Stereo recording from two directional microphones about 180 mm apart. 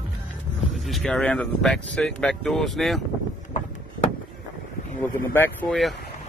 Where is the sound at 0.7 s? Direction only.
Centre (ahead or behind).